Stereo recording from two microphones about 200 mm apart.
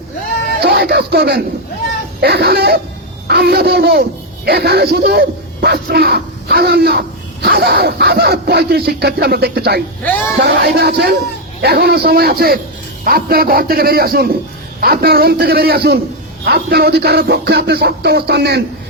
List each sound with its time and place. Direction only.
0.6 s speech: 50° right (ahead or behind)
10.0 s speech: 10° left (ahead or behind)
10.3 s speech: 50° right (ahead or behind)
16.5 s a sound: 55° right (ahead or behind)